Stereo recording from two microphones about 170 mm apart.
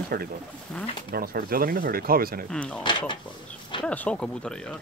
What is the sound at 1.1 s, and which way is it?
Speech, 65° right (ahead or behind).